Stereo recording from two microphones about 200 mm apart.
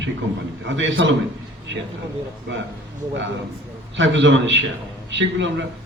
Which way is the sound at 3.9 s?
65° right (ahead or behind).